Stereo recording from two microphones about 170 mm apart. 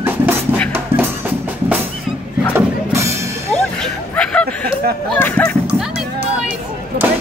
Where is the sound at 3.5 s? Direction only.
5° left (ahead or behind).